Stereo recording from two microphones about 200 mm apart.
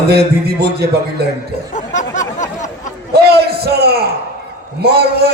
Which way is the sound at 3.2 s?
55° right (ahead or behind).